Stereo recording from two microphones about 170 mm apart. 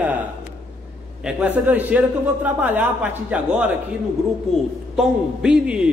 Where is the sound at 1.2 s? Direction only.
5° right (ahead or behind).